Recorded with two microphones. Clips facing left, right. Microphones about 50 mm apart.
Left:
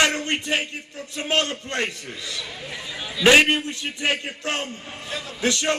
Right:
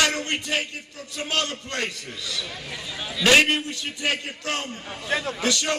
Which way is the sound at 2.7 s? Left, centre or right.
Centre.